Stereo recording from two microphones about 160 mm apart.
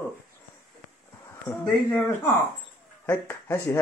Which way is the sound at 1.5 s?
15° left (ahead or behind).